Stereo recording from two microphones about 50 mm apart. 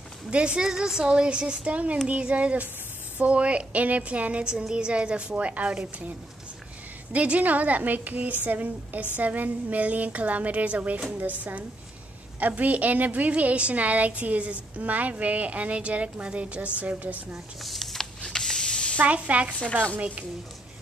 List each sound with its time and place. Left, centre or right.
0.3 s a woman's voice: right
17.6 s a sound: centre
18.2 s printer: centre
19.0 s a woman's voice: right